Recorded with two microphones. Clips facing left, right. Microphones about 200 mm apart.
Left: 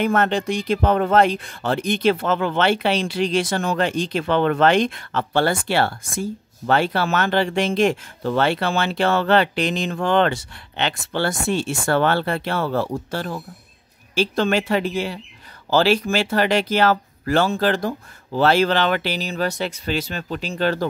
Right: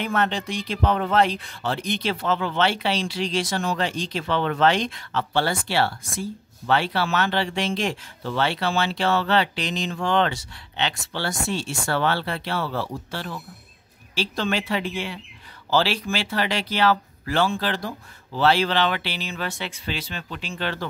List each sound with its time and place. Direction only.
0.0 s speech: 50° left (ahead or behind)